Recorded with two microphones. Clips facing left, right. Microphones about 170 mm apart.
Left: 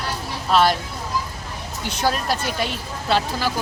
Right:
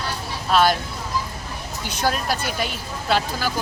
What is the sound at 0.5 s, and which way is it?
Speech, centre (ahead or behind).